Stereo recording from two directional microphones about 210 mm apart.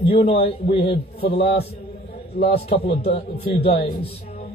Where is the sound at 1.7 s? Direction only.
30° left (ahead or behind).